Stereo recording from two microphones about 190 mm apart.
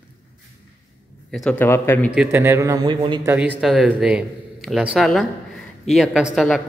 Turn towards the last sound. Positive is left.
turn(degrees=0)  # may be behind; listen again after turning